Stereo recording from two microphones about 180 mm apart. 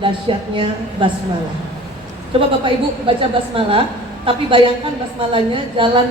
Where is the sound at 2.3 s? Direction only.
30° right (ahead or behind).